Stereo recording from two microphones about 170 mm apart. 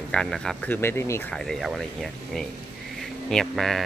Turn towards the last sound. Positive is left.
turn(degrees=0)  # may be behind; listen again after turning